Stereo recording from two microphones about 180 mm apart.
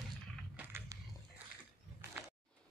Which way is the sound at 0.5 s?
10° right (ahead or behind).